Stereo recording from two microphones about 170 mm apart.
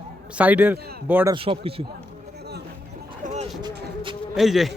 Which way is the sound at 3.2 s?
40° right (ahead or behind).